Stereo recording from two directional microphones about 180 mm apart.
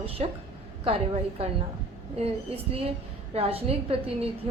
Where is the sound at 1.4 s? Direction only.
35° right (ahead or behind).